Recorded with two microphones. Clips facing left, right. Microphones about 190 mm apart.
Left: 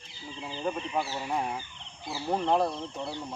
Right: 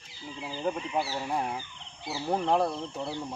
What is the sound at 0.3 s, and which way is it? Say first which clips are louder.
Speech: right 1 dB; 5° right (ahead or behind).